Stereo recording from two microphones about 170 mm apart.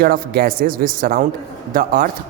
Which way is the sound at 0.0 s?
60° right (ahead or behind).